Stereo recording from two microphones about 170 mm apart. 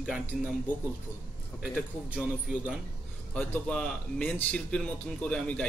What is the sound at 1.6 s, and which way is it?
Speech, 5° right (ahead or behind).